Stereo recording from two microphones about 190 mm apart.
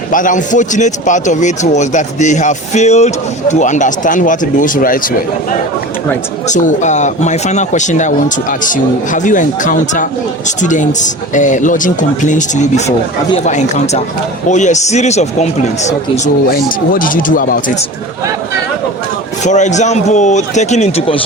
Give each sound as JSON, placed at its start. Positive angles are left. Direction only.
{"t": 0.1, "sound": "speech", "side_deg": 45}
{"t": 19.5, "sound": "speech", "side_deg": 40}